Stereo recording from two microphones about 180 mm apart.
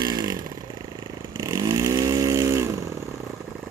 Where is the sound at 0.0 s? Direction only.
20° right (ahead or behind).